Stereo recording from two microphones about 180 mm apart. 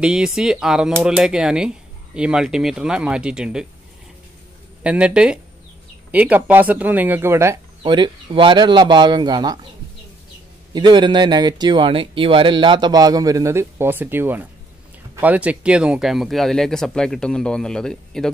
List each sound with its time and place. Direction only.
0.0 s speech: 5° right (ahead or behind)
4.8 s speech: 5° right (ahead or behind)
7.8 s speech: 25° right (ahead or behind)
10.7 s speech: 25° right (ahead or behind); by 18.3 s 5° left (ahead or behind)